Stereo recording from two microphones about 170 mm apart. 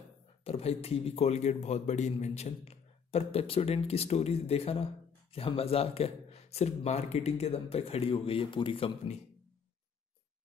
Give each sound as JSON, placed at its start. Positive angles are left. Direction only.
{"t": 0.4, "sound": "a man's voice", "side_deg": 35}